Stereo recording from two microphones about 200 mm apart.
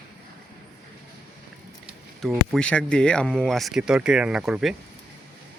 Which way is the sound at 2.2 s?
Centre (ahead or behind).